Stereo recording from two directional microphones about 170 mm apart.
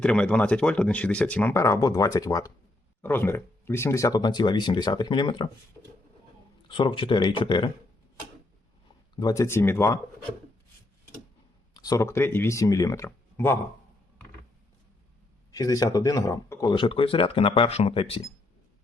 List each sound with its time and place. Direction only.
0.0 s speech: 5° left (ahead or behind); by 5.5 s 30° left (ahead or behind)
6.7 s speech: 30° left (ahead or behind)
9.1 s speech: 20° left (ahead or behind)
11.7 s speech: 20° left (ahead or behind)
15.5 s speech: 20° left (ahead or behind)